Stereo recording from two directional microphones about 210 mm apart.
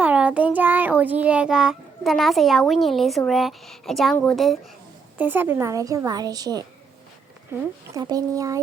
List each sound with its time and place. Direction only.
0.0 s child singing: 5° right (ahead or behind)
5.1 s a woman's voice: 10° right (ahead or behind)
7.9 s a woman's voice: 15° right (ahead or behind)